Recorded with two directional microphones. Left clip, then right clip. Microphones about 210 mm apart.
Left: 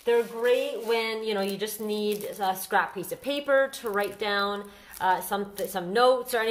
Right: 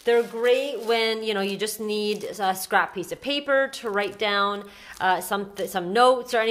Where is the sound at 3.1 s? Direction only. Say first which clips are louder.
Right 2 dB; 20° right (ahead or behind).